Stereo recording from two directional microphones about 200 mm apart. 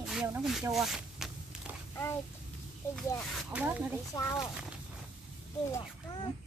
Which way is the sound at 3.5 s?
5° right (ahead or behind).